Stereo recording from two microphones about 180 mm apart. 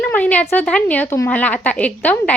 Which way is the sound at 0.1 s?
10° left (ahead or behind).